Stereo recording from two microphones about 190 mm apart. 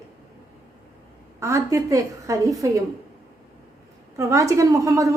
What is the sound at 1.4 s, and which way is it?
A woman's voice, 15° right (ahead or behind).